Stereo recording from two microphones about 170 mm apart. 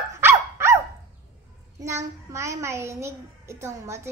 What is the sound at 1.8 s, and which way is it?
A child's voice, 15° right (ahead or behind).